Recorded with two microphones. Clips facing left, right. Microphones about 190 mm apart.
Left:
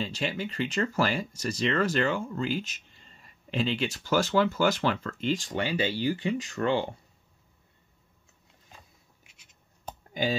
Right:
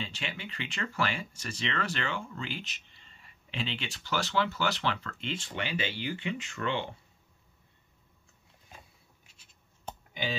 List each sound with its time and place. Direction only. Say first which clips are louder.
0.0 s speech: left 8 dB; 40° left (ahead or behind)